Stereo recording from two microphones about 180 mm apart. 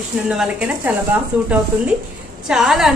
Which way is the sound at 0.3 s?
5° right (ahead or behind).